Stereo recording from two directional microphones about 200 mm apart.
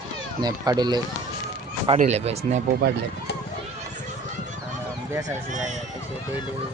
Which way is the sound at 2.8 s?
55° right (ahead or behind).